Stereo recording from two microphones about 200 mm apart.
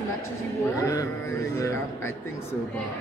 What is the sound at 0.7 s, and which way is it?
A woman's voice, 15° left (ahead or behind).